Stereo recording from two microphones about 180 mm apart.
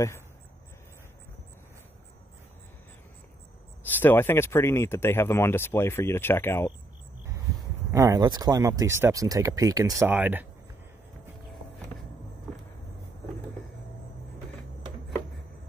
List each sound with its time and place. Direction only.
4.0 s speech: 10° left (ahead or behind)
7.9 s speech: 20° right (ahead or behind)